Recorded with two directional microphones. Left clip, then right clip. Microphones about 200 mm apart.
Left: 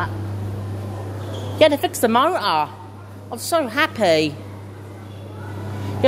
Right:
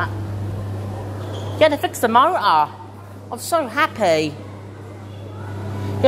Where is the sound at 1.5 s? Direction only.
40° left (ahead or behind).